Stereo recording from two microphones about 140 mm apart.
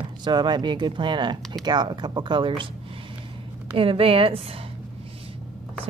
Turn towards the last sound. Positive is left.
turn(degrees=-40)  # may be behind; listen again after turning